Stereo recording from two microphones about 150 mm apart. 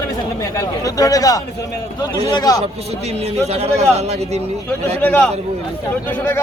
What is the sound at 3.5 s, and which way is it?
Speech, 45° right (ahead or behind).